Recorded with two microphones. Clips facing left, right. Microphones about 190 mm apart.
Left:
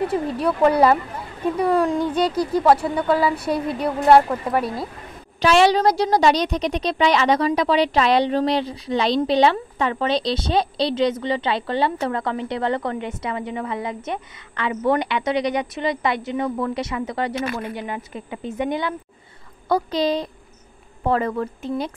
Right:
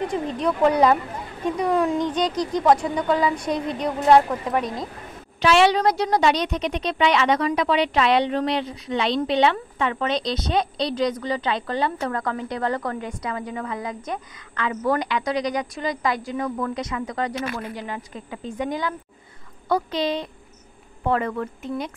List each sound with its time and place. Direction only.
0.0 s speech: 5° left (ahead or behind)
5.4 s a woman's voice: 40° left (ahead or behind)
19.7 s a woman's voice: 35° left (ahead or behind)